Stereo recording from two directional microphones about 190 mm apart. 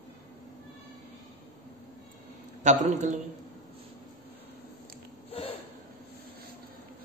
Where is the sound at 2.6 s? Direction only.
40° right (ahead or behind).